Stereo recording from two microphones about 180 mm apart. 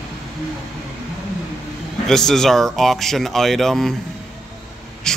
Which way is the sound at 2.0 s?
Centre (ahead or behind).